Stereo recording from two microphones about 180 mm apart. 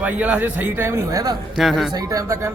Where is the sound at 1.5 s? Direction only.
Centre (ahead or behind).